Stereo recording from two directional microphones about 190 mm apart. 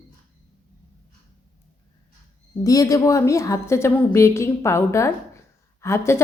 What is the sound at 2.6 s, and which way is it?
A woman's voice, 20° left (ahead or behind).